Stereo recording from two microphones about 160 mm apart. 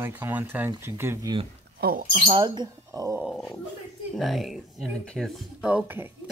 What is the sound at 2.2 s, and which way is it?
Speech, 30° right (ahead or behind).